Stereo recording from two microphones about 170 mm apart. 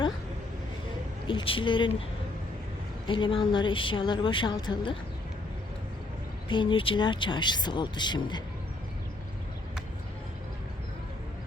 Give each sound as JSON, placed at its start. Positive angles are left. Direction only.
{"t": 1.3, "sound": "a woman's voice", "side_deg": 30}
{"t": 3.1, "sound": "a woman's voice", "side_deg": 30}
{"t": 6.5, "sound": "a woman's voice", "side_deg": 30}